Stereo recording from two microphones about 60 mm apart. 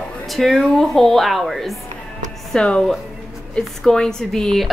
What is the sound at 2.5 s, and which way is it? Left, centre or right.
A woman's voice, centre.